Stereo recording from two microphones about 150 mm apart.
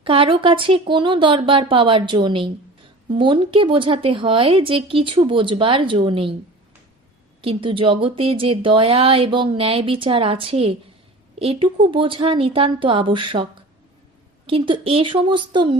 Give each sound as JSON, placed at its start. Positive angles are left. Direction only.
{"t": 0.0, "sound": "speech", "side_deg": -35}
{"t": 7.4, "sound": "speech", "side_deg": -35}